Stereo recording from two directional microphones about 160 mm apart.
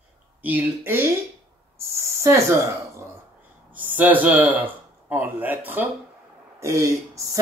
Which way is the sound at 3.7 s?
10° right (ahead or behind).